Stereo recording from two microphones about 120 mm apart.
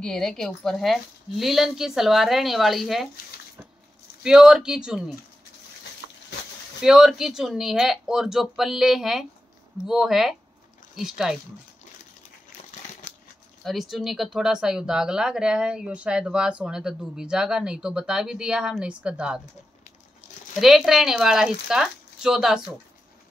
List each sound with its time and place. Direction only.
0.0 s speech: 5° left (ahead or behind)
4.2 s speech: 5° right (ahead or behind)
6.8 s speech: 5° right (ahead or behind)
13.7 s speech: centre (ahead or behind)
20.5 s speech: centre (ahead or behind)